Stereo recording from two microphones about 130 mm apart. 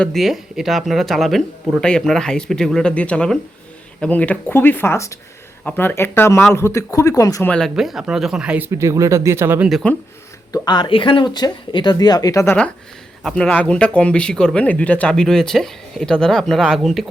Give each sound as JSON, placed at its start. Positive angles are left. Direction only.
{"t": 0.0, "sound": "speech", "side_deg": 0}
{"t": 7.4, "sound": "speech", "side_deg": 10}
{"t": 7.8, "sound": "speech", "side_deg": -5}
{"t": 9.8, "sound": "speech", "side_deg": 10}
{"t": 10.5, "sound": "speech", "side_deg": 35}
{"t": 13.2, "sound": "speech", "side_deg": 10}